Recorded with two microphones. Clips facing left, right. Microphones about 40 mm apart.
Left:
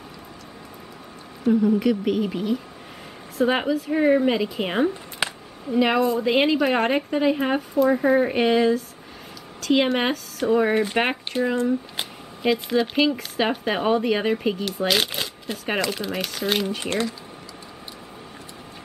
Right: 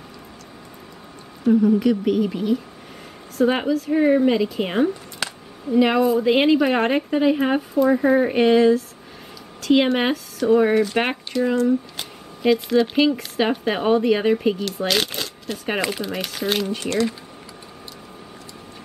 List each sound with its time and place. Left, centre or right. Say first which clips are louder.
1.4 s a woman's voice: right 3 dB; centre
5.2 s a sound: left 2 dB; left
5.7 s a woman's voice: right 3 dB; centre
10.7 s speech: right 2 dB; left
12.4 s a woman's voice: right 4 dB; centre
15.5 s a woman's voice: right 1 dB; centre
16.8 s speech: right 3 dB; left